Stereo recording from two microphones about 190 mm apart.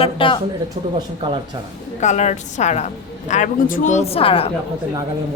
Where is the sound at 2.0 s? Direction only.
35° left (ahead or behind).